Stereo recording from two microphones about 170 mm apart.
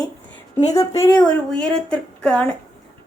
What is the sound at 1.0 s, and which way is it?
Speech, 5° left (ahead or behind).